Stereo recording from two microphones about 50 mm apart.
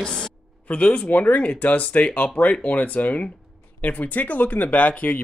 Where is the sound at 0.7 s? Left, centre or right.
Left.